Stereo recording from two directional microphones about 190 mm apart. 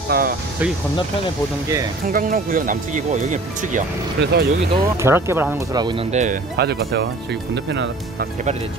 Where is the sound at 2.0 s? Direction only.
45° right (ahead or behind).